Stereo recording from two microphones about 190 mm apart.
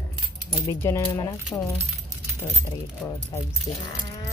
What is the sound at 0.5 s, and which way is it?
Speech, 15° left (ahead or behind).